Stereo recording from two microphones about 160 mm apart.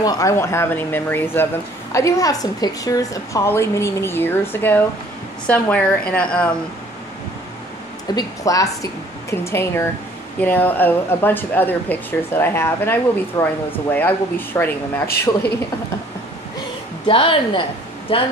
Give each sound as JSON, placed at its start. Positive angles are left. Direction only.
{"t": 0.0, "sound": "speech", "side_deg": 20}
{"t": 8.1, "sound": "a woman's voice", "side_deg": 20}
{"t": 17.0, "sound": "a woman's voice", "side_deg": 35}